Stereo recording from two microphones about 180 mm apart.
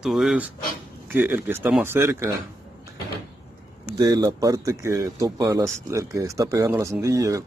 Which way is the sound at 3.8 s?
20° right (ahead or behind).